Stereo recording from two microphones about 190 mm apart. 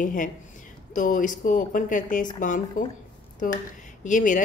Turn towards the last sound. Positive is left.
turn(degrees=45)  # may be behind; listen again after turning